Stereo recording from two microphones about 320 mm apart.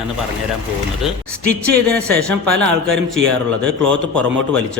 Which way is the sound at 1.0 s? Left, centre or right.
Centre.